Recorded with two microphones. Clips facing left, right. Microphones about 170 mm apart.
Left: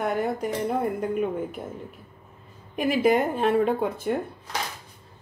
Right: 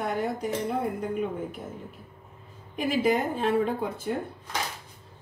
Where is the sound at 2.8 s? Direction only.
60° left (ahead or behind).